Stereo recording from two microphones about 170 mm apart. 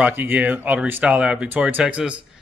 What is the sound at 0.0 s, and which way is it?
Speech, 10° right (ahead or behind).